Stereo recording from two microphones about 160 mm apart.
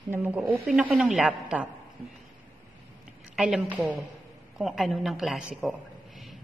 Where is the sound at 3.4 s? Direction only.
5° right (ahead or behind).